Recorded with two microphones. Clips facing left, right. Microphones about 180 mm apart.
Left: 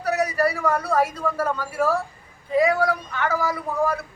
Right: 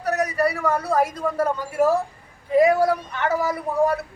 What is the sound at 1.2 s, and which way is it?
Speech, 20° right (ahead or behind).